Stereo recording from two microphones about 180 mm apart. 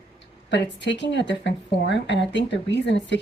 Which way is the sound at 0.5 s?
80° left.